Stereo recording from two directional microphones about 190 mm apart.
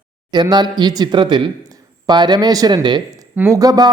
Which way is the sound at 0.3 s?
20° right (ahead or behind).